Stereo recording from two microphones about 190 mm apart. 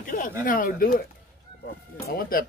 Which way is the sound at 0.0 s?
45° left (ahead or behind).